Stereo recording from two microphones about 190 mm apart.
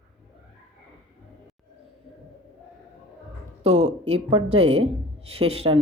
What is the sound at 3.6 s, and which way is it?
Speech, 35° right (ahead or behind).